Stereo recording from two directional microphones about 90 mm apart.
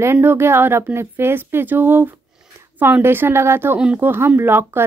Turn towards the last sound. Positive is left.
turn(degrees=-25)  # may be behind; listen again after turning